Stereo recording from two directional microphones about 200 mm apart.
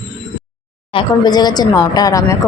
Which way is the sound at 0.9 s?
20° left (ahead or behind).